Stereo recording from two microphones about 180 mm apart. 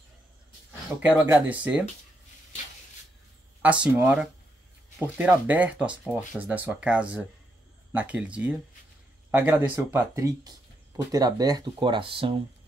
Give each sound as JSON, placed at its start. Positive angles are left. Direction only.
{"t": 0.9, "sound": "speech", "side_deg": -15}
{"t": 3.6, "sound": "speech", "side_deg": -5}